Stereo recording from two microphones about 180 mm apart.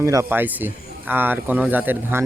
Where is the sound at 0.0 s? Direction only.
15° right (ahead or behind).